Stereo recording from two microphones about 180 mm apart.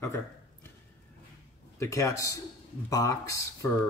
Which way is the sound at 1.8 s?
15° left (ahead or behind).